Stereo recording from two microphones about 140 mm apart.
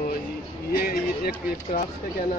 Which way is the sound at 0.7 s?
90° left.